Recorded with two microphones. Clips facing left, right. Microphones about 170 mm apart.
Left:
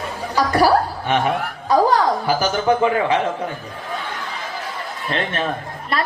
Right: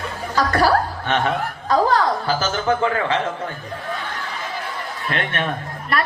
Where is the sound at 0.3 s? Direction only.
10° left (ahead or behind).